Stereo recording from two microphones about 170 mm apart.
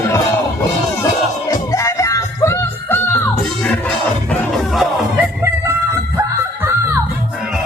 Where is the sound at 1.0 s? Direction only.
20° left (ahead or behind).